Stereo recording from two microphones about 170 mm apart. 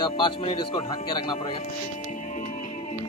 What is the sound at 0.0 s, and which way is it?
Speech, 30° left (ahead or behind).